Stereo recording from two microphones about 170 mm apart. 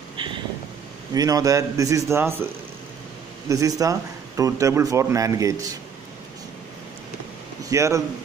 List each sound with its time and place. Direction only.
1.1 s speech: 20° right (ahead or behind)
7.7 s speech: 20° right (ahead or behind)